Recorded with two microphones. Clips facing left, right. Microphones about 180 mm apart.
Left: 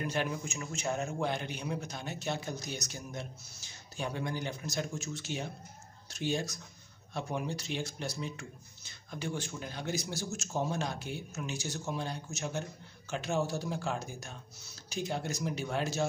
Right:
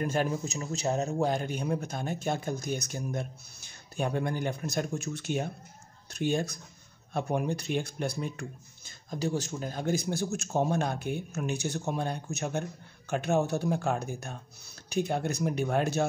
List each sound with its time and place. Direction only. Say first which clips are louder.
0.0 s a man's voice: right 5 dB; 45° right (ahead or behind)